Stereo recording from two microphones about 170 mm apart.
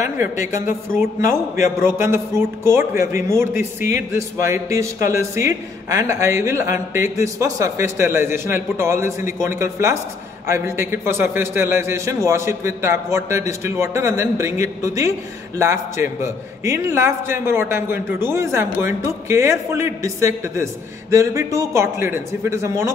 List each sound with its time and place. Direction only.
0.8 s a man's voice: 15° right (ahead or behind)